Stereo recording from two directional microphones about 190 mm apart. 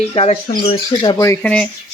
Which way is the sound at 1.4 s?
5° left (ahead or behind).